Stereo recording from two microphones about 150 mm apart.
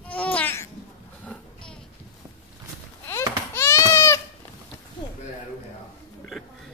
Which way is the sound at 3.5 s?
15° left (ahead or behind).